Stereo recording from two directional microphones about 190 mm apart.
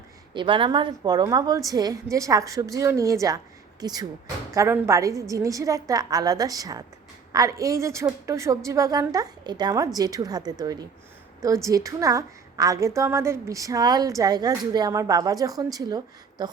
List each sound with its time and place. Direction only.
0.3 s a woman's voice: 25° right (ahead or behind)